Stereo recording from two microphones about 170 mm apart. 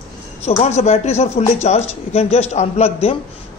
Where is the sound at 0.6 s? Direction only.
40° left (ahead or behind).